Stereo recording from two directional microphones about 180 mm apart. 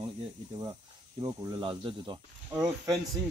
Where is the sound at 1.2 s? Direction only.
25° right (ahead or behind).